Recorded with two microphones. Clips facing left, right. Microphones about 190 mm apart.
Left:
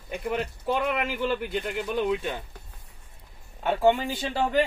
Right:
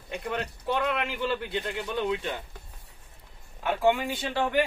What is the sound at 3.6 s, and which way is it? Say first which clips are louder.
Speech: left 2 dB; 30° left (ahead or behind).